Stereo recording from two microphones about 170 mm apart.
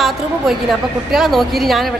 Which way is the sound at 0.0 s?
Centre (ahead or behind).